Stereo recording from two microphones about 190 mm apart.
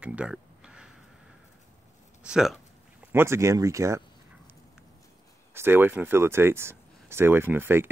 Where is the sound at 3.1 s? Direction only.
15° right (ahead or behind).